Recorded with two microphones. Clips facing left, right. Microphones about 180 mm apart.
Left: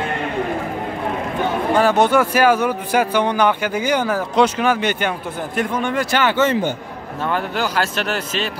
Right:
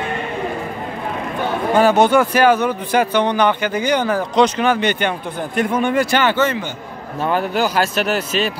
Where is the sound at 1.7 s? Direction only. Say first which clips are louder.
Right 3 dB; centre (ahead or behind).